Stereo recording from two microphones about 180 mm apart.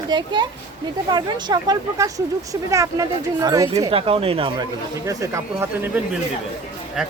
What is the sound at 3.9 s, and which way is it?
Speech, 30° right (ahead or behind).